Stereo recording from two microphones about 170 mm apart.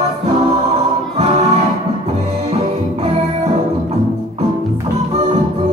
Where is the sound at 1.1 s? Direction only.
35° right (ahead or behind).